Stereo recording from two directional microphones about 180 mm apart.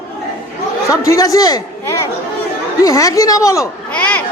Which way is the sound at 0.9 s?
15° left (ahead or behind).